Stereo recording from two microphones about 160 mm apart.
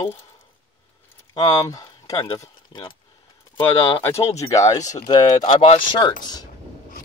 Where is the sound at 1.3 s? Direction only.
25° left (ahead or behind).